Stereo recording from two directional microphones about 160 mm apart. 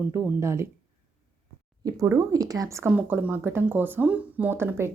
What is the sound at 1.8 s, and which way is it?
Speech, 20° right (ahead or behind).